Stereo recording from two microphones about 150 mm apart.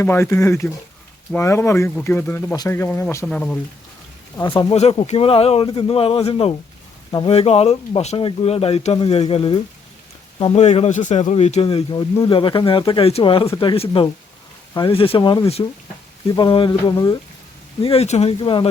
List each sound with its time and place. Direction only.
0.0 s speech: 15° left (ahead or behind)
1.4 s a sound: 20° left (ahead or behind)
2.0 s speech: 15° left (ahead or behind)
2.6 s a sound: 20° left (ahead or behind)
3.2 s speech: 10° left (ahead or behind)
4.5 s speech: 40° left (ahead or behind)
10.4 s speech: 45° left (ahead or behind)
11.6 s speech: 30° left (ahead or behind)
16.3 s a sound: 35° left (ahead or behind)
17.8 s speech: 45° left (ahead or behind)